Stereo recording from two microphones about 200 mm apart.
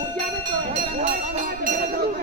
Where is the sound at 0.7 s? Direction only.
30° right (ahead or behind).